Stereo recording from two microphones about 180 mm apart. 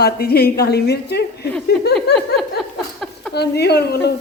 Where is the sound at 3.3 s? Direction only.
65° left (ahead or behind).